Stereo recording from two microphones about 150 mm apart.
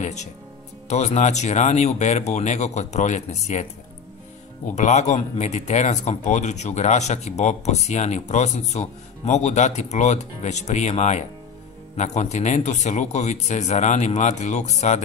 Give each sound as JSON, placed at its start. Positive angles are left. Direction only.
{"t": 0.0, "sound": "speech", "side_deg": 50}
{"t": 4.7, "sound": "speech", "side_deg": 50}